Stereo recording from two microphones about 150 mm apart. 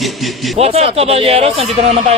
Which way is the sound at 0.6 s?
40° right (ahead or behind).